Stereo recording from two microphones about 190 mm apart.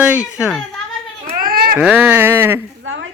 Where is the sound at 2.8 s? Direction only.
90° right.